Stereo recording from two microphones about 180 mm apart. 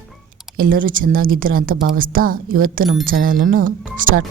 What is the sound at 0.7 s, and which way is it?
Speech, 50° right (ahead or behind).